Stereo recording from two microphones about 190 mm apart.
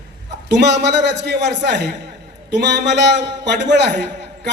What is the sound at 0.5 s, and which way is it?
A man's voice, 65° right (ahead or behind).